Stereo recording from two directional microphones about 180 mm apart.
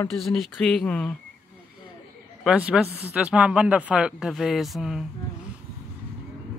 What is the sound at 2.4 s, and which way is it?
A man's voice, 5° right (ahead or behind).